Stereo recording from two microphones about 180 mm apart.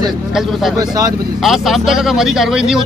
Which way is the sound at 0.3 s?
Centre (ahead or behind).